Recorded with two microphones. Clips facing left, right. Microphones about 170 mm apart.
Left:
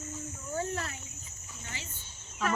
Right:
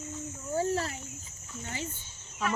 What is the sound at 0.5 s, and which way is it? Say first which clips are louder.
Cricket: right 5 dB; 35° right (ahead or behind).